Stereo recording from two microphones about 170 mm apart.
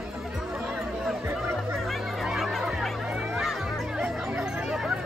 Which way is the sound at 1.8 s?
Centre (ahead or behind).